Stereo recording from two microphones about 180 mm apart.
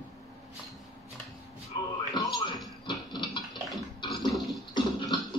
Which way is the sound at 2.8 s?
25° left (ahead or behind).